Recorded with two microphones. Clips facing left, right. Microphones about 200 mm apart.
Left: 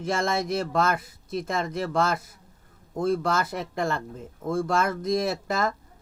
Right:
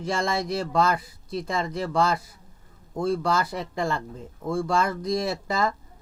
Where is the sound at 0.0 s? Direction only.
55° left (ahead or behind).